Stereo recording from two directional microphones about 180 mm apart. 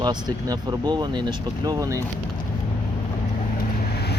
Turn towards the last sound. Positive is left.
turn(degrees=65)  # may be behind; listen again after turning